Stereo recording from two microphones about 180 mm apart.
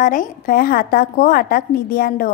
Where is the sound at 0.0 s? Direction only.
45° left (ahead or behind).